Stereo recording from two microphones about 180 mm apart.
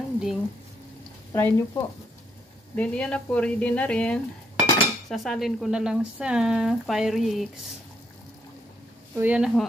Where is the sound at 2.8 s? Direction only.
5° left (ahead or behind).